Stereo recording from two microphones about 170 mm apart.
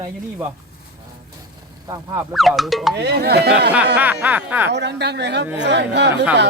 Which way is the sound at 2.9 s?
80° right.